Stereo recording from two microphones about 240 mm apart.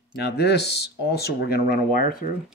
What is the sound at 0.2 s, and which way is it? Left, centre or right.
Speech, left.